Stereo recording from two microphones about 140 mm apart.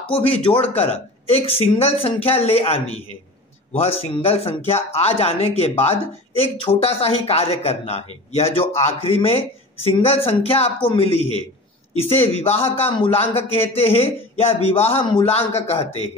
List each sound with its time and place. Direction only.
0.1 s speech: 40° left (ahead or behind)
3.7 s speech: 45° left (ahead or behind)
15.3 s speech: 45° left (ahead or behind)